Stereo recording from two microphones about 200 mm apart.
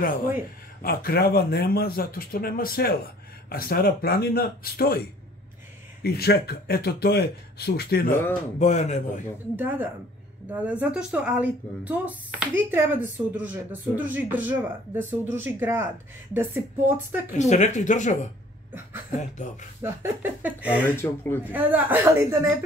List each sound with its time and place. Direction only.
0.8 s speech: 50° left (ahead or behind)
6.0 s speech: 50° left (ahead or behind)
8.5 s speech: 35° left (ahead or behind)
9.6 s speech: 10° right (ahead or behind)
17.4 s speech: 35° left (ahead or behind)
19.1 s speech: 40° left (ahead or behind)
19.8 s speech: 10° right (ahead or behind)
20.8 s speech: 10° left (ahead or behind)
21.5 s speech: 10° right (ahead or behind)